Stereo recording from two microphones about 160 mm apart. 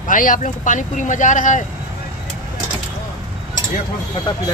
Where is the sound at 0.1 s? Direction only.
55° left (ahead or behind).